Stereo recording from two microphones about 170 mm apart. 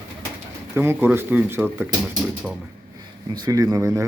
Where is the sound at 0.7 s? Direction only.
15° right (ahead or behind).